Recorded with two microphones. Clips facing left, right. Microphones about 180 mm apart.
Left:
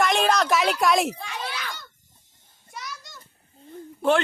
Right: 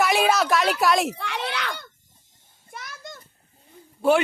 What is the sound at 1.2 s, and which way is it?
Children playing, 70° right (ahead or behind).